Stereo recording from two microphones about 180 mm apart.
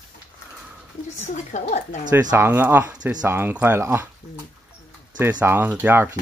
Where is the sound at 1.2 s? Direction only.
40° left (ahead or behind).